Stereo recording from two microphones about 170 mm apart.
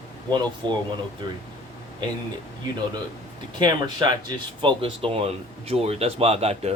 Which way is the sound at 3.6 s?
25° right (ahead or behind).